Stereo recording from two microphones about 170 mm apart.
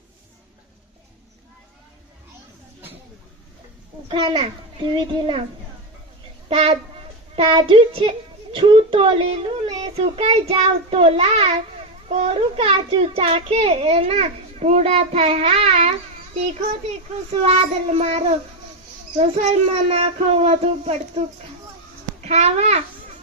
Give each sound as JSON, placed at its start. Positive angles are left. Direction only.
{"t": 4.1, "sound": "a child's voice", "side_deg": -35}
{"t": 6.5, "sound": "a child's voice", "side_deg": -35}
{"t": 17.4, "sound": "a child's voice", "side_deg": -35}
{"t": 22.2, "sound": "a child's voice", "side_deg": -40}